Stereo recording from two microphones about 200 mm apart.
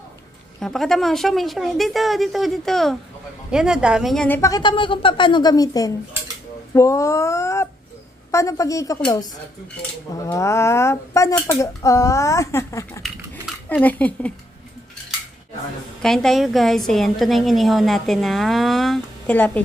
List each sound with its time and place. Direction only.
0.6 s a woman's voice: centre (ahead or behind)
4.4 s a woman's voice: 20° left (ahead or behind)
16.0 s a woman's voice: centre (ahead or behind)